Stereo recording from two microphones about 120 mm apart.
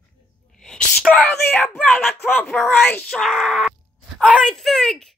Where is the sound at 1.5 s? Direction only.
10° left (ahead or behind).